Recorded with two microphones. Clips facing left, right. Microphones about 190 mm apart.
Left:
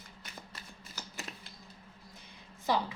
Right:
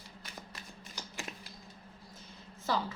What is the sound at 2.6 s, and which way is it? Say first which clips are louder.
Speech: left 2 dB; 15° left (ahead or behind).